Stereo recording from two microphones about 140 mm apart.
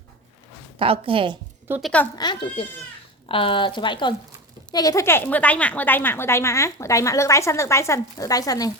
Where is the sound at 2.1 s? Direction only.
30° left (ahead or behind).